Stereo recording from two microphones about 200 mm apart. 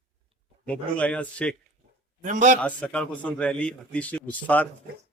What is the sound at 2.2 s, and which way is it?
Speech, 40° right (ahead or behind).